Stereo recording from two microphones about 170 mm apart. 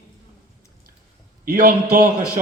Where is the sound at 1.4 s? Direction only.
55° right (ahead or behind).